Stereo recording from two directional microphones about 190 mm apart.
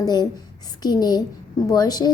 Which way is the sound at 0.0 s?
20° left (ahead or behind).